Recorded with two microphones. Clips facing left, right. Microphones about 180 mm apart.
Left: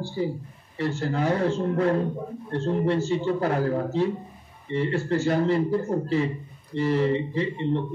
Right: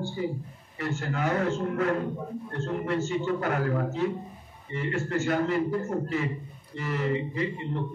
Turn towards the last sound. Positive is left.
turn(degrees=30)  # may be behind; listen again after turning